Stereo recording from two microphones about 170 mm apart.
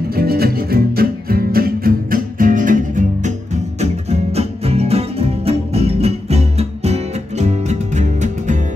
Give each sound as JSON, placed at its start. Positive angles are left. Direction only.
{"t": 0.1, "sound": "music", "side_deg": -65}
{"t": 3.8, "sound": "music", "side_deg": -40}